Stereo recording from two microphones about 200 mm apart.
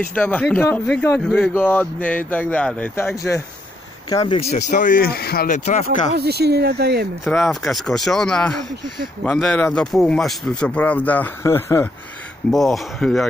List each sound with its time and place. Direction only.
0.1 s speech: 10° left (ahead or behind)
4.5 s speech: 35° left (ahead or behind)
6.1 s speech: 55° right (ahead or behind)
7.2 s speech: centre (ahead or behind)